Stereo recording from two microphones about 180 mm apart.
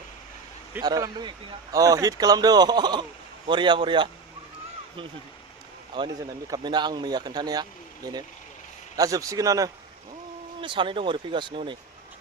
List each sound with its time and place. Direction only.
0.8 s speech: 20° right (ahead or behind)
6.0 s speech: 25° right (ahead or behind)